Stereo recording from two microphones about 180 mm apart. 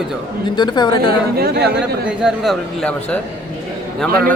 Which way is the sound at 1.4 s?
60° right (ahead or behind).